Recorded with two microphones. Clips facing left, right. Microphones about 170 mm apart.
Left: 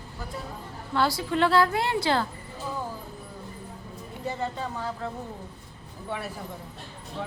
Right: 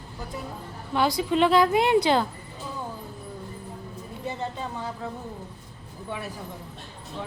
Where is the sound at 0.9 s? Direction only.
15° right (ahead or behind).